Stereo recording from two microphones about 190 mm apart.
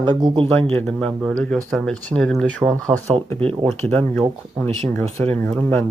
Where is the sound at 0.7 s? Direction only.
5° left (ahead or behind).